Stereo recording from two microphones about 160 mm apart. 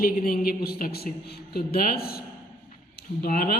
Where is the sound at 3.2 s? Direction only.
70° left (ahead or behind).